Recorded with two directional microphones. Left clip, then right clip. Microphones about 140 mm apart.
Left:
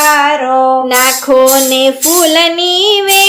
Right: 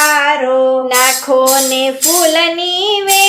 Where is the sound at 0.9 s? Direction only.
45° left (ahead or behind).